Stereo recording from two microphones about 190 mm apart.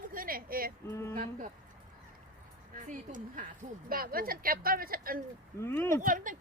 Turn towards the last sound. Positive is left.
turn(degrees=-45)  # may be behind; listen again after turning